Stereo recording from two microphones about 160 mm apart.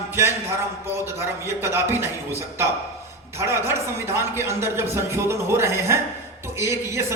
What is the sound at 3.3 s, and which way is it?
A man's voice, 15° right (ahead or behind).